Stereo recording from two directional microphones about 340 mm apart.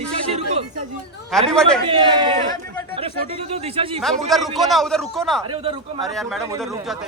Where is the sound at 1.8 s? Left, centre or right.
Centre.